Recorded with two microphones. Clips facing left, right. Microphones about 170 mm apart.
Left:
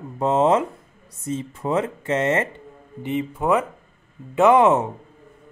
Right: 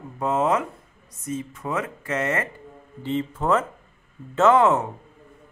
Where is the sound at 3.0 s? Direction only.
15° left (ahead or behind).